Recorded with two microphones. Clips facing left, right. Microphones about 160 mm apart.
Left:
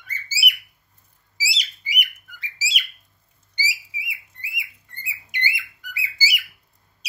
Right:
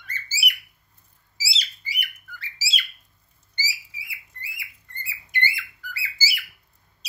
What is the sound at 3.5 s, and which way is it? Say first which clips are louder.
Bird: left 4 dB; 15° left (ahead or behind).